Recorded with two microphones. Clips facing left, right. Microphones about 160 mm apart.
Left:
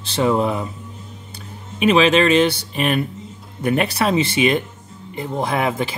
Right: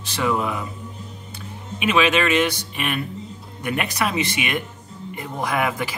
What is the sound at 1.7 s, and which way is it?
Speech, 35° left (ahead or behind).